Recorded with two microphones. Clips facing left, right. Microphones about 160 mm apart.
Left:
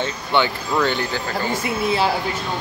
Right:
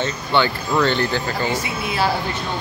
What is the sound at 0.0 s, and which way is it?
Speech, 15° left (ahead or behind).